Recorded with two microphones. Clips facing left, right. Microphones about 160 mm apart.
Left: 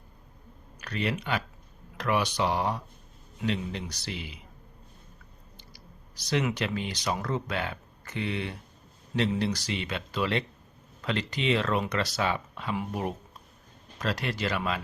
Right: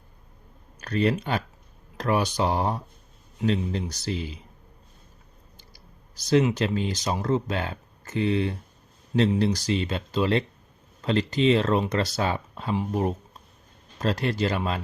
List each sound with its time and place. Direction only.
0.8 s speech: 35° right (ahead or behind)
6.3 s speech: 30° right (ahead or behind)